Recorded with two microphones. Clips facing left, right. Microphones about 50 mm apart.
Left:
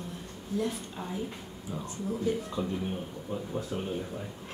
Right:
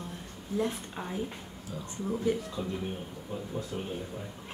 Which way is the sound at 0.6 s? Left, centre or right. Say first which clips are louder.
Right 3 dB; right.